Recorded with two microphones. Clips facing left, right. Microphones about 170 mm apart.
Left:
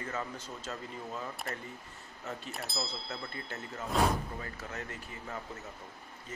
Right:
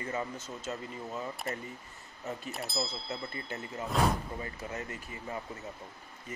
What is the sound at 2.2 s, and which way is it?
Speech, 5° right (ahead or behind).